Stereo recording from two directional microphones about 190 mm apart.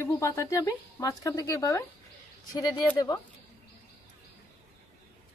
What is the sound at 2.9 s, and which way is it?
Speech, 20° left (ahead or behind).